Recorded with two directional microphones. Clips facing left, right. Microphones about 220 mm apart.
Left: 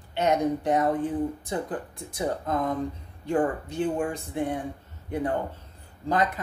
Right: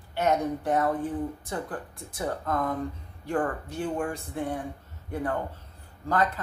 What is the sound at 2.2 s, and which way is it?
Speech, 20° left (ahead or behind).